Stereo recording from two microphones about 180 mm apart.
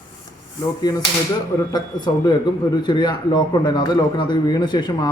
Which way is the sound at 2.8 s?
25° left (ahead or behind).